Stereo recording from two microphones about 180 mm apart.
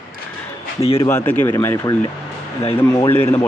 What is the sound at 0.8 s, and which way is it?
Speech, 35° left (ahead or behind).